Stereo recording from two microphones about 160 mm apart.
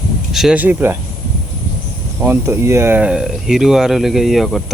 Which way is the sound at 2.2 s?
15° right (ahead or behind).